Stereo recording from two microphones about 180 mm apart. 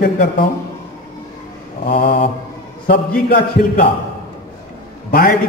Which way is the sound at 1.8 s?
55° left (ahead or behind).